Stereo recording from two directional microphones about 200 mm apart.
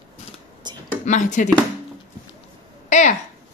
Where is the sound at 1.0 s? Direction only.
35° left (ahead or behind).